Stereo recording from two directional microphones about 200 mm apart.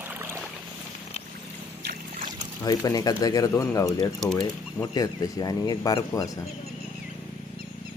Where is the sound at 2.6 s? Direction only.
20° left (ahead or behind).